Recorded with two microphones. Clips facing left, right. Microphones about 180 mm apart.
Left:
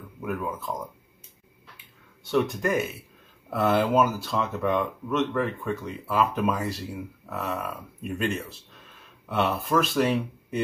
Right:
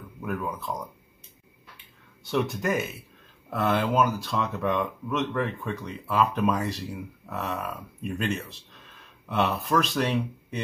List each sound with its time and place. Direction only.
0.2 s speech: 5° left (ahead or behind)
2.2 s speech: centre (ahead or behind)